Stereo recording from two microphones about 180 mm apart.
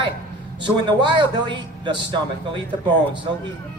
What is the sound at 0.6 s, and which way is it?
A man's voice, 25° right (ahead or behind).